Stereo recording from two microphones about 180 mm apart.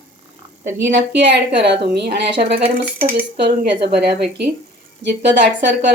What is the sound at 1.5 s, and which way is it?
Speech, 70° right (ahead or behind).